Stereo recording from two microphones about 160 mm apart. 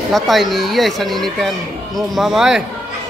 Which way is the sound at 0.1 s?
Centre (ahead or behind).